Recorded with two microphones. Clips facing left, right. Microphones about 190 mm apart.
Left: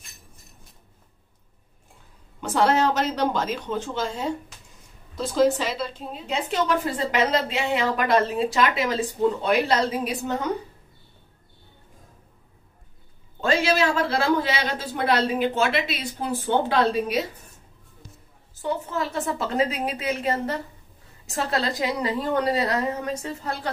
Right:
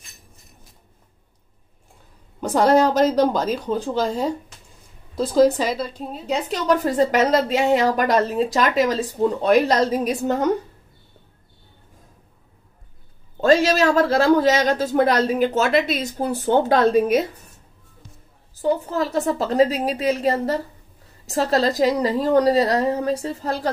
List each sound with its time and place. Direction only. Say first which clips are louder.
2.4 s a woman's voice: right 5 dB; 40° right (ahead or behind)
13.4 s a man's voice: right 5 dB; 40° right (ahead or behind)
18.6 s a woman's voice: right 6 dB; 40° right (ahead or behind)